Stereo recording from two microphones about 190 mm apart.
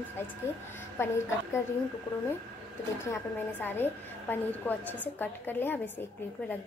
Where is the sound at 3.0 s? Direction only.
10° left (ahead or behind).